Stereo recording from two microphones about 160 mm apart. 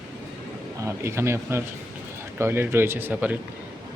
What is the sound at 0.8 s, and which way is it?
Speech, 15° right (ahead or behind).